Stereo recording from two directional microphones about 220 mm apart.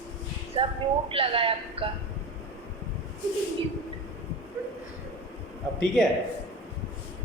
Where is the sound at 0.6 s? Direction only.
25° right (ahead or behind).